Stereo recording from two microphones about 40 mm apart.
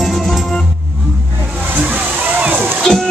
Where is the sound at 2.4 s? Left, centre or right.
Right.